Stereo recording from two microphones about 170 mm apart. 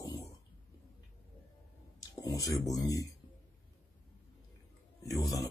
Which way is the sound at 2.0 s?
20° left (ahead or behind).